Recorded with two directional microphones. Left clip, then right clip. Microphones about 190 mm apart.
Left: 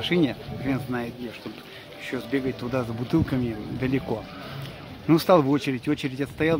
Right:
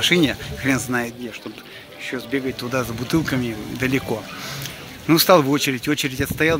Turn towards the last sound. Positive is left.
turn(degrees=0)  # may be behind; listen again after turning